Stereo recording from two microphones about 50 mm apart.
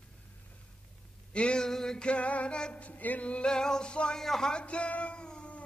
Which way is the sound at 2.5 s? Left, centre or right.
Centre.